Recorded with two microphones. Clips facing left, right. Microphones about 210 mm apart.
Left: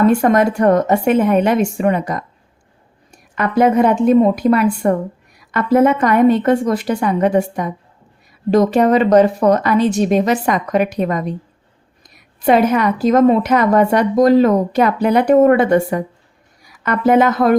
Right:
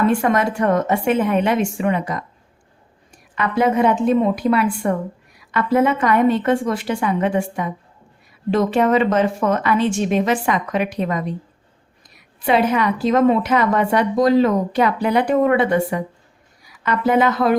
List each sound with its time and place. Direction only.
0.1 s speech: 40° left (ahead or behind)
3.3 s a woman's voice: 45° left (ahead or behind)
12.4 s a woman's voice: 45° left (ahead or behind)
16.8 s a woman's voice: 45° left (ahead or behind)